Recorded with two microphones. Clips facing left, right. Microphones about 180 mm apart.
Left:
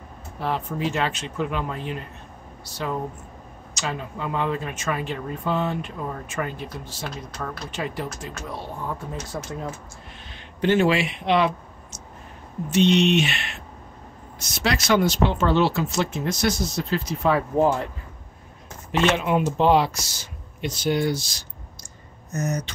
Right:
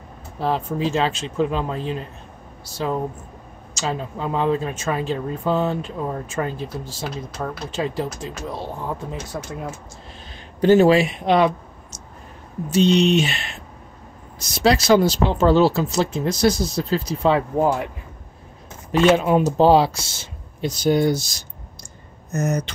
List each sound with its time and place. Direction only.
0.4 s speech: 30° right (ahead or behind)
3.8 s speech: 30° right (ahead or behind)
9.3 s speech: centre (ahead or behind)
10.6 s speech: 40° right (ahead or behind)
12.6 s speech: 35° right (ahead or behind)
14.4 s speech: 35° right (ahead or behind)
17.6 s speech: 10° right (ahead or behind)
19.1 s speech: 40° right (ahead or behind)
20.7 s speech: 40° right (ahead or behind)
22.3 s speech: 60° right (ahead or behind)